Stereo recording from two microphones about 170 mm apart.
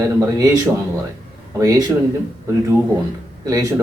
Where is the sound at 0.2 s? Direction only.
20° right (ahead or behind).